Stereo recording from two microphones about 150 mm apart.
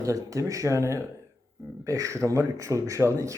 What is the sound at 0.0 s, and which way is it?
Speech, 20° right (ahead or behind).